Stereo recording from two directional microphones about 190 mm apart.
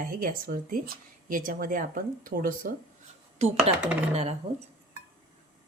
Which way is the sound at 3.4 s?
35° right (ahead or behind).